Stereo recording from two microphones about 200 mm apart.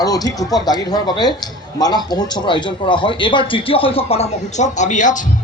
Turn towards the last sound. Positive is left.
turn(degrees=40)  # may be behind; listen again after turning